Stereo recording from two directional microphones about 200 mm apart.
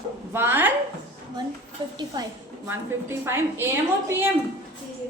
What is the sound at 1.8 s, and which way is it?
A woman's voice, 20° right (ahead or behind).